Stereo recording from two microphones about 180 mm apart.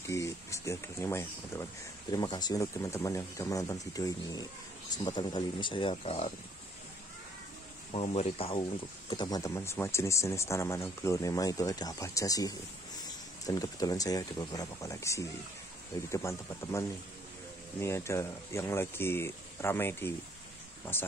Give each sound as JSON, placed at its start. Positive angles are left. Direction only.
{"t": 0.1, "sound": "speech", "side_deg": 15}
{"t": 7.9, "sound": "speech", "side_deg": 35}